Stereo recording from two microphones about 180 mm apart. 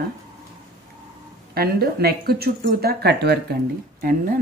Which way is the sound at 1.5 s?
60° right (ahead or behind).